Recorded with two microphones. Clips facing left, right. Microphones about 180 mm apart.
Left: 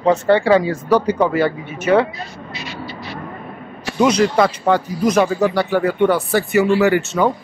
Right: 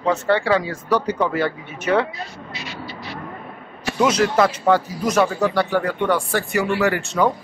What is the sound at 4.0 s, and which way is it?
Speech, 5° right (ahead or behind).